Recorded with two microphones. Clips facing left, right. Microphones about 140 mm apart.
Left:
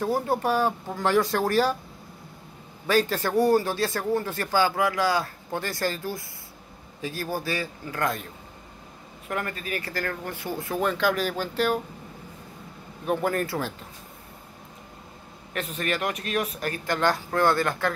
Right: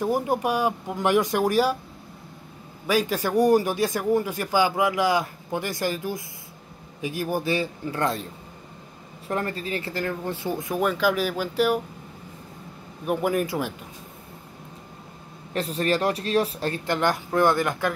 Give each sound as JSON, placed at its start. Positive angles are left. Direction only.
{"t": 0.0, "sound": "speech", "side_deg": -15}
{"t": 2.9, "sound": "speech", "side_deg": -10}
{"t": 9.3, "sound": "speech", "side_deg": -30}
{"t": 13.0, "sound": "speech", "side_deg": -10}
{"t": 15.5, "sound": "speech", "side_deg": -35}